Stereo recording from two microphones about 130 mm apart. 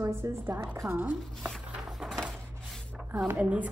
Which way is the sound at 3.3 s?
10° right (ahead or behind).